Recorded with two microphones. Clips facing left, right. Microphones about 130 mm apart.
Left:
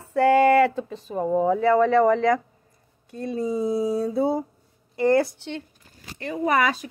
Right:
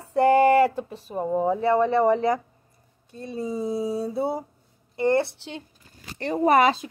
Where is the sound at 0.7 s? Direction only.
10° right (ahead or behind).